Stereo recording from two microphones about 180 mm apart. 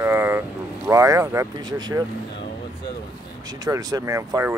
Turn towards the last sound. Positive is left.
turn(degrees=-15)  # may be behind; listen again after turning